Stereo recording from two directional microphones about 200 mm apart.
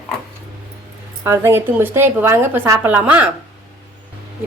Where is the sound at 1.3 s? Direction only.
10° right (ahead or behind).